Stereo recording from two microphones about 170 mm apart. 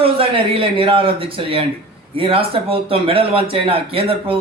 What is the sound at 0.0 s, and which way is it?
Speech, 30° right (ahead or behind).